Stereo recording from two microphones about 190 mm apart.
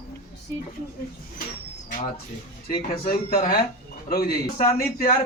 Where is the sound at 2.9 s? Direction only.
45° left (ahead or behind).